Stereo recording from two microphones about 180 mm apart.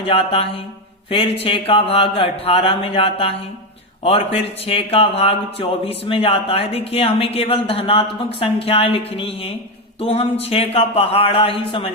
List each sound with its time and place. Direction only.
0.0 s speech: 30° left (ahead or behind)